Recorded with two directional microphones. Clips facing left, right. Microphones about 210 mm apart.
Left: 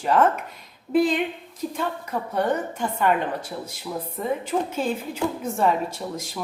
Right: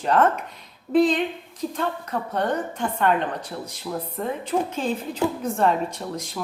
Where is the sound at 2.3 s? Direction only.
10° left (ahead or behind).